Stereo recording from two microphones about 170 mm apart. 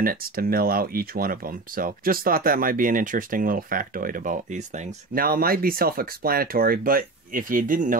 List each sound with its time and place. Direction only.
0.0 s speech: 60° right (ahead or behind)